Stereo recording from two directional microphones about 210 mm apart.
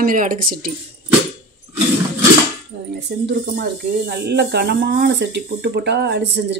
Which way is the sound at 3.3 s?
50° right (ahead or behind).